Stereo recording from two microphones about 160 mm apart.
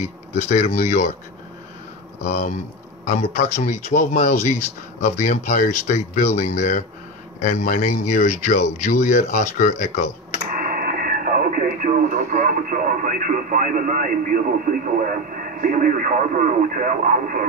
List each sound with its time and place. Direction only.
0.0 s speech: 45° left (ahead or behind)
2.2 s speech: 45° left (ahead or behind)
10.7 s speech: 65° right (ahead or behind)